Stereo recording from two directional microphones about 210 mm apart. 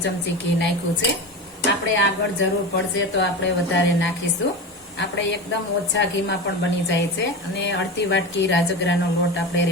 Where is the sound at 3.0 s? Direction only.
60° left (ahead or behind).